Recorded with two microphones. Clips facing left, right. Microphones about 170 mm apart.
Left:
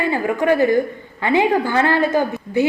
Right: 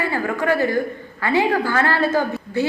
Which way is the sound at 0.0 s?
20° left (ahead or behind).